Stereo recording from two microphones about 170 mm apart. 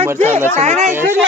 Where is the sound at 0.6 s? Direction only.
40° right (ahead or behind).